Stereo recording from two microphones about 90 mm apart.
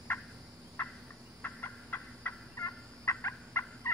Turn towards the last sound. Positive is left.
turn(degrees=30)  # may be behind; listen again after turning